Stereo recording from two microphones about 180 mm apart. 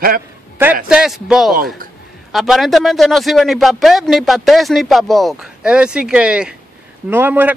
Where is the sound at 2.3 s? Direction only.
Centre (ahead or behind).